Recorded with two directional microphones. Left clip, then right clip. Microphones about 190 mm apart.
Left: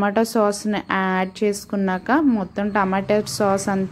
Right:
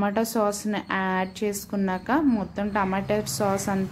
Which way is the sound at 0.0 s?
25° left (ahead or behind).